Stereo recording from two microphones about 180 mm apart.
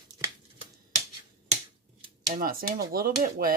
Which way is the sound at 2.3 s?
50° right (ahead or behind).